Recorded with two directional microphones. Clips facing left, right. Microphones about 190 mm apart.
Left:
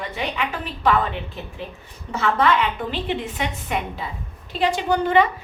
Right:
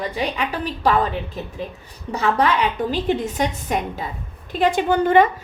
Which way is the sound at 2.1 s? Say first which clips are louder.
Right 1 dB; 40° right (ahead or behind).